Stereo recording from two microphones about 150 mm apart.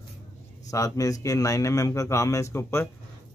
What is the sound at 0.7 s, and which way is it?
A man's voice, 20° left (ahead or behind).